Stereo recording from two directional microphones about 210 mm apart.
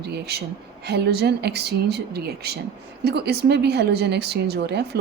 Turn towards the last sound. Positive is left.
turn(degrees=-50)  # may be behind; listen again after turning